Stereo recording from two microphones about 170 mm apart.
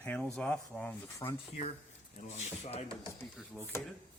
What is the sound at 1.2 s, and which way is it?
Speech, 25° left (ahead or behind).